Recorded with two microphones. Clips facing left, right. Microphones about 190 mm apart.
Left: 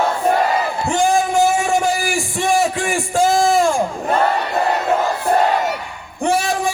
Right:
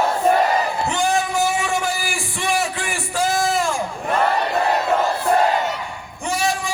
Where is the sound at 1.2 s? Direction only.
50° left (ahead or behind).